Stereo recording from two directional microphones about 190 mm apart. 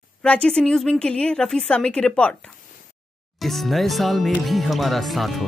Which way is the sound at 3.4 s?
Centre (ahead or behind).